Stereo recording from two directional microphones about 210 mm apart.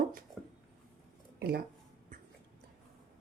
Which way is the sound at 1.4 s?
50° right (ahead or behind).